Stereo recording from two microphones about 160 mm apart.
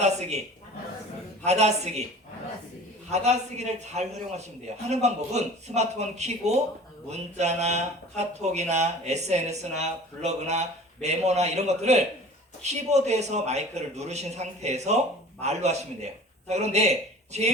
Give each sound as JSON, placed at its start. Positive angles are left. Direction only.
{"t": 0.0, "sound": "speech", "side_deg": -45}
{"t": 1.5, "sound": "speech", "side_deg": -45}
{"t": 3.1, "sound": "speech", "side_deg": -45}